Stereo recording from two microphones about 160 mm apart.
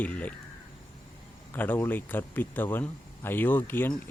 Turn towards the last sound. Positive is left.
turn(degrees=15)  # may be behind; listen again after turning